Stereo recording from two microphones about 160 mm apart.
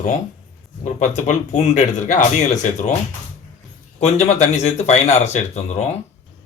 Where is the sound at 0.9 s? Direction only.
50° left (ahead or behind).